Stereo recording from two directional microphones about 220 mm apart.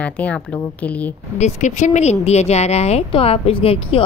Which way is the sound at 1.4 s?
30° left (ahead or behind).